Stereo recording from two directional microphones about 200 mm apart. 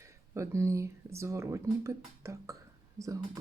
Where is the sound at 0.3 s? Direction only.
15° right (ahead or behind).